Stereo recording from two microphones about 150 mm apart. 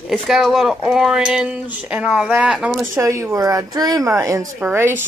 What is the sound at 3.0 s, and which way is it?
A woman's voice, 20° right (ahead or behind).